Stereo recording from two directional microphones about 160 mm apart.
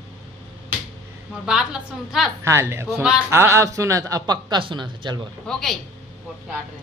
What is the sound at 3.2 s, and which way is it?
A man's voice, 15° right (ahead or behind).